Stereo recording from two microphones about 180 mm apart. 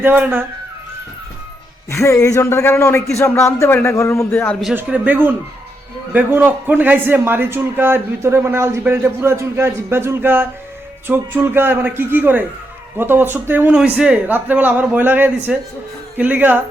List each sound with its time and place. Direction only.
0.0 s a man's voice: 10° right (ahead or behind)
1.9 s speech: 15° left (ahead or behind)
4.3 s a man's voice: 5° left (ahead or behind)
4.7 s a man's voice: 10° right (ahead or behind)